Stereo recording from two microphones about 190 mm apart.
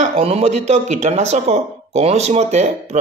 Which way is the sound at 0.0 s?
30° right (ahead or behind).